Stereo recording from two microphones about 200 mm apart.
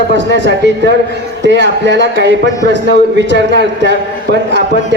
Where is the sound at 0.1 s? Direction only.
65° right (ahead or behind).